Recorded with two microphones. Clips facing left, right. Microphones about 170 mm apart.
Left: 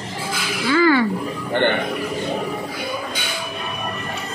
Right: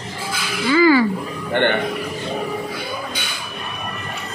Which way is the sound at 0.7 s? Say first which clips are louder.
Right 2 dB; 5° right (ahead or behind).